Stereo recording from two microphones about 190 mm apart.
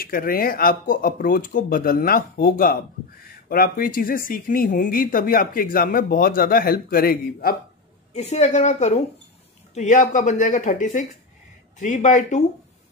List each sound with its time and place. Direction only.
0.0 s speech: 50° left (ahead or behind)
8.1 s speech: 35° left (ahead or behind)